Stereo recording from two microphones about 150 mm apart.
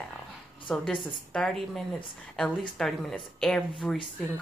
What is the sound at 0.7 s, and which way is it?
Speech, 5° left (ahead or behind).